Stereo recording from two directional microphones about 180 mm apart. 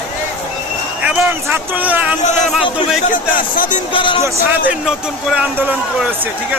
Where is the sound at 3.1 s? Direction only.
50° left (ahead or behind).